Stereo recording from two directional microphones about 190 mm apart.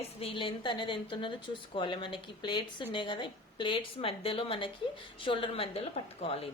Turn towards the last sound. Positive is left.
turn(degrees=30)  # may be behind; listen again after turning